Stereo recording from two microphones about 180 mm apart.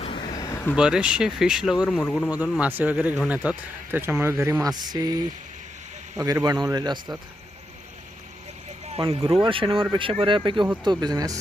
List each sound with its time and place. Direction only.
0.0 s a sound: 30° left (ahead or behind)
0.8 s speech: 5° right (ahead or behind)
2.3 s speech: 10° right (ahead or behind)
6.1 s a man's voice: 20° right (ahead or behind)
8.9 s a man's voice: 30° right (ahead or behind)